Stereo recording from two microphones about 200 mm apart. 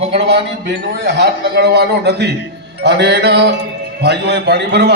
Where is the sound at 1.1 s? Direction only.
60° right (ahead or behind).